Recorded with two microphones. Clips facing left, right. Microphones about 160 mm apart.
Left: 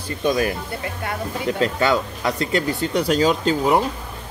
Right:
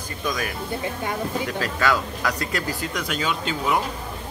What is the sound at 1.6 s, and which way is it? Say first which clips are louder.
Speech: left 5 dB; 25° left (ahead or behind).